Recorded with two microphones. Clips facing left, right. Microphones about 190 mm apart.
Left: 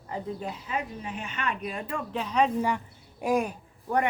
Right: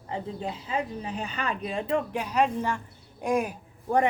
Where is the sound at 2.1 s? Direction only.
10° right (ahead or behind).